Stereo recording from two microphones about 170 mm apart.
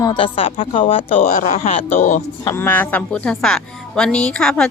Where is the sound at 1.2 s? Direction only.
50° left (ahead or behind).